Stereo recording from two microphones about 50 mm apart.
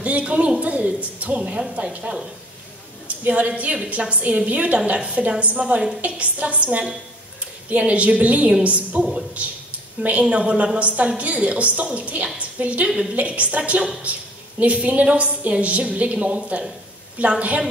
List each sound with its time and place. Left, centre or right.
0.0 s a woman's voice: right
3.3 s a woman's voice: right